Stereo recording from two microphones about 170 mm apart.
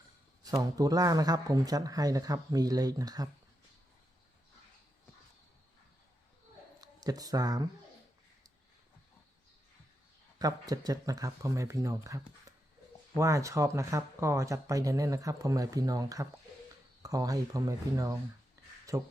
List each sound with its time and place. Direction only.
0.4 s speech: 20° right (ahead or behind)
6.8 s speech: 20° right (ahead or behind)
10.3 s speech: 20° right (ahead or behind)